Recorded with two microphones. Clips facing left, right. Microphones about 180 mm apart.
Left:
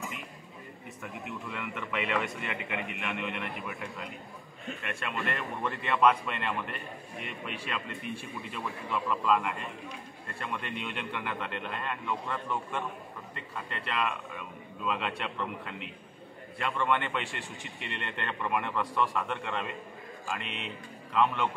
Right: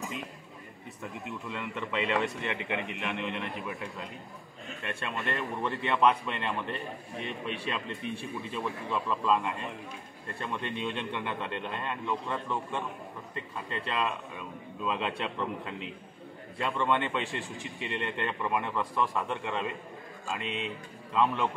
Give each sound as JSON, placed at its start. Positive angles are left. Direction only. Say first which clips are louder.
{"t": 1.8, "sound": "a man's voice", "louder": "right 3 dB", "side_deg": -25}
{"t": 4.8, "sound": "a man's voice", "louder": "right 1 dB", "side_deg": -25}